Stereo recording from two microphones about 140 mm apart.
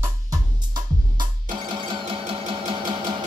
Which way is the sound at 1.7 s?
35° right (ahead or behind).